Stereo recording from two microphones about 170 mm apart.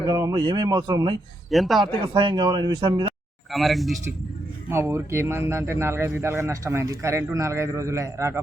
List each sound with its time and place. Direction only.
0.0 s speech: 20° right (ahead or behind)
1.5 s speech: centre (ahead or behind)
2.1 s speech: 25° right (ahead or behind)
3.5 s speech: centre (ahead or behind)
4.7 s a man's voice: 15° right (ahead or behind)